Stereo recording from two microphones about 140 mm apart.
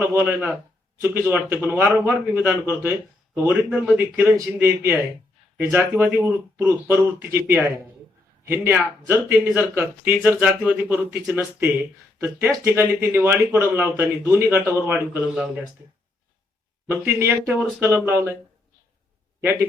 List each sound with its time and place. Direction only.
0.0 s speech: 15° right (ahead or behind)
12.5 s speech: 15° right (ahead or behind)
17.2 s speech: 15° right (ahead or behind)
19.4 s a man's voice: 15° right (ahead or behind)